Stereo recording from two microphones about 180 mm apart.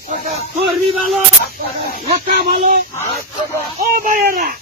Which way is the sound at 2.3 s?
50° right (ahead or behind).